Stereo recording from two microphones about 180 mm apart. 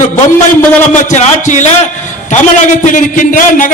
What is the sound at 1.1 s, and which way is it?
Speech, 40° left (ahead or behind).